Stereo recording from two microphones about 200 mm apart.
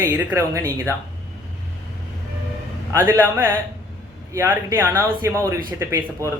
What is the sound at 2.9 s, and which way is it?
Speech, 10° right (ahead or behind).